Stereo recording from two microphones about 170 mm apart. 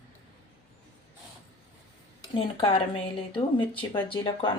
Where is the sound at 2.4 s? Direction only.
35° left (ahead or behind).